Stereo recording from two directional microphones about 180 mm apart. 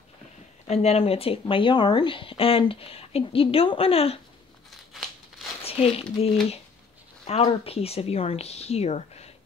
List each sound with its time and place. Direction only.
0.7 s speech: 35° left (ahead or behind)
5.6 s speech: 35° left (ahead or behind)